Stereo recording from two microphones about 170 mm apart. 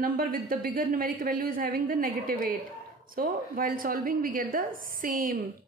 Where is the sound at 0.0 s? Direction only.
55° right (ahead or behind).